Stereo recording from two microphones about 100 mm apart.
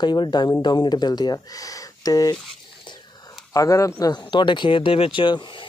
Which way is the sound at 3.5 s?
35° left (ahead or behind).